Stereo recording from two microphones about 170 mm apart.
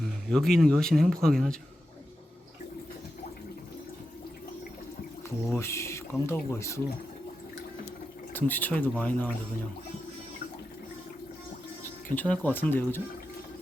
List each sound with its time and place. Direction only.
0.0 s speech: centre (ahead or behind)
5.5 s speech: 15° left (ahead or behind)
8.3 s speech: 10° left (ahead or behind)
12.0 s speech: 10° left (ahead or behind)